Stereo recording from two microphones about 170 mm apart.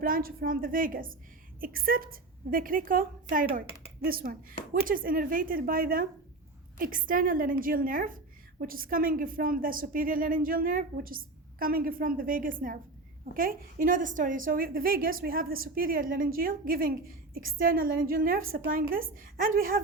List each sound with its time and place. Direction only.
0.0 s a woman's voice: 55° right (ahead or behind)